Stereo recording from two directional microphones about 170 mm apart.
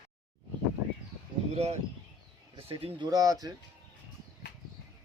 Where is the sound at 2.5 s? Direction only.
35° right (ahead or behind).